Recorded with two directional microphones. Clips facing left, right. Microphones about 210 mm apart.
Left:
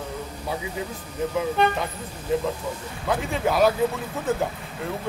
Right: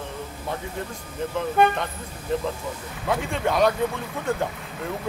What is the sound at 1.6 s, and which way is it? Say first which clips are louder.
Speech: right 3 dB; 50° right (ahead or behind).